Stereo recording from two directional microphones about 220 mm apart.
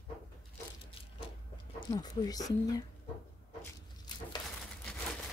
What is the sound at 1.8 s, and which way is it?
Speech, 20° left (ahead or behind).